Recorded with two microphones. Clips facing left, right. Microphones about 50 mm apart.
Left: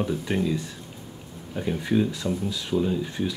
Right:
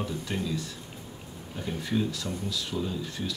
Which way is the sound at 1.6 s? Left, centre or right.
Centre.